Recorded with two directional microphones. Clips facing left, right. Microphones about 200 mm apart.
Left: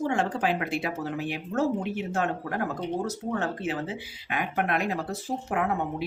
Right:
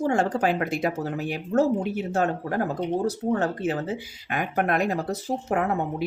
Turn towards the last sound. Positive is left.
turn(degrees=-40)  # may be behind; listen again after turning